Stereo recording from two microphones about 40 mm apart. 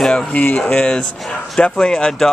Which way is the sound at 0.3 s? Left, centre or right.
Left.